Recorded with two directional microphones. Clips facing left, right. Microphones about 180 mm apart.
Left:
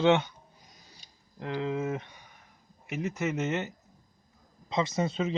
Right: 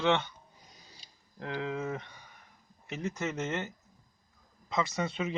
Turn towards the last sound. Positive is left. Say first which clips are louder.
# left 4 dB
turn(degrees=30)  # may be behind; listen again after turning